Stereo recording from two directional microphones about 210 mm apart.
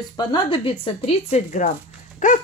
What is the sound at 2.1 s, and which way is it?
Dog, 40° left (ahead or behind).